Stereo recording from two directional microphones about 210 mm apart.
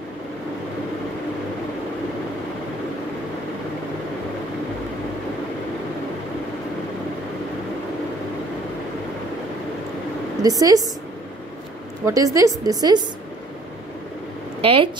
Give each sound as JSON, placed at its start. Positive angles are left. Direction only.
{"t": 10.4, "sound": "a woman's voice", "side_deg": -15}
{"t": 12.0, "sound": "a woman's voice", "side_deg": -15}
{"t": 14.6, "sound": "speech", "side_deg": -25}